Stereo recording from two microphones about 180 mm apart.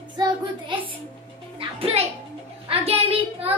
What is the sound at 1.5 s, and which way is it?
Music, 30° right (ahead or behind).